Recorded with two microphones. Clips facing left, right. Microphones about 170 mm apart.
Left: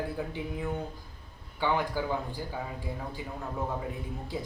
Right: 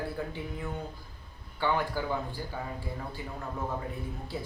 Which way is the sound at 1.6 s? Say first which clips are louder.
Left 1 dB; 15° left (ahead or behind).